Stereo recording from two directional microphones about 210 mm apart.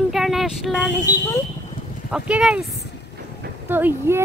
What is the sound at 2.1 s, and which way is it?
Speech, 5° right (ahead or behind).